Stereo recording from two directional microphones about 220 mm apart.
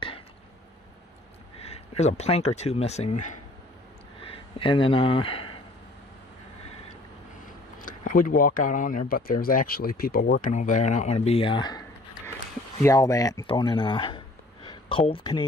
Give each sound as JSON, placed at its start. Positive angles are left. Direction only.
{"t": 1.6, "sound": "speech", "side_deg": 30}
{"t": 7.8, "sound": "speech", "side_deg": 40}
{"t": 10.5, "sound": "speech", "side_deg": 35}